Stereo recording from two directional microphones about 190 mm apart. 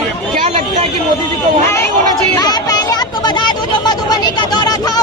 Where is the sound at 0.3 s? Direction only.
40° right (ahead or behind).